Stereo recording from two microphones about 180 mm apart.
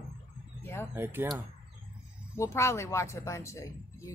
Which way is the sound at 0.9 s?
10° right (ahead or behind).